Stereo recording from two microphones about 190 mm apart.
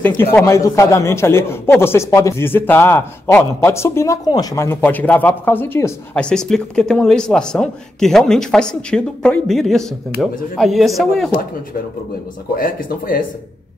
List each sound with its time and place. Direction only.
0.0 s a man's voice: 10° left (ahead or behind)
12.5 s speech: 50° left (ahead or behind)